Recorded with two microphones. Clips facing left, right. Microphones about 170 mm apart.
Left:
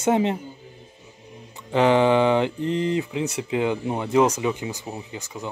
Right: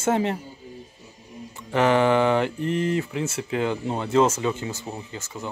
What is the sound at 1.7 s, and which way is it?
Speech, 20° left (ahead or behind).